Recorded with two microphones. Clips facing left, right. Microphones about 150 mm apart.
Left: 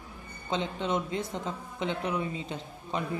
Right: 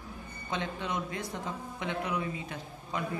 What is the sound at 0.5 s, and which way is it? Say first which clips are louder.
Speech: left 4 dB; 25° left (ahead or behind).